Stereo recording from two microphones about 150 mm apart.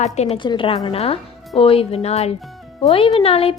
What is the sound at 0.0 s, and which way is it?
Speech, 45° left (ahead or behind).